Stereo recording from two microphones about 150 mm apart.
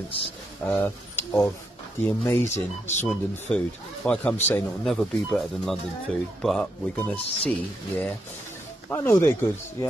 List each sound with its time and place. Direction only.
0.7 s speech: 15° left (ahead or behind)
2.5 s speech: 50° left (ahead or behind)
3.1 s speech: 5° left (ahead or behind)